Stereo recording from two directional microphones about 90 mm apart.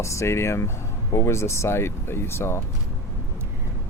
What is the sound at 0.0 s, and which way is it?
Speech, 35° left (ahead or behind).